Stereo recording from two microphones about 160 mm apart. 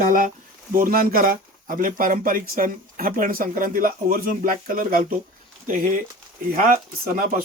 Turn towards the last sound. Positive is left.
turn(degrees=-60)  # may be behind; listen again after turning